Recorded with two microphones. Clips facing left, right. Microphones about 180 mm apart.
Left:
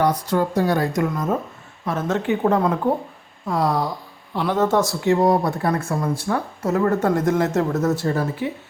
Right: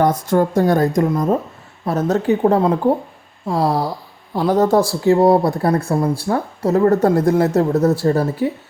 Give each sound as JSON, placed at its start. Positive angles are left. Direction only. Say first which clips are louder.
{"t": 0.0, "sound": "a woman's voice", "louder": "right 4 dB", "side_deg": -50}
{"t": 0.9, "sound": "speech", "louder": "right 5 dB", "side_deg": -35}